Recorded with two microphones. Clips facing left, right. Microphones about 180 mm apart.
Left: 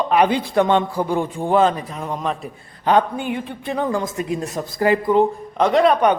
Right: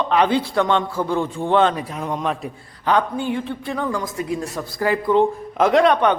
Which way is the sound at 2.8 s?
15° left (ahead or behind).